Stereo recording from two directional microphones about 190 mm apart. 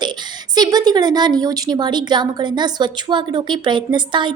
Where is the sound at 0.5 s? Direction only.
20° right (ahead or behind).